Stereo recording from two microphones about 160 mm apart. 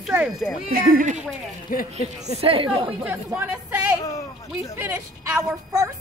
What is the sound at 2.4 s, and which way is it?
Speech, 35° right (ahead or behind).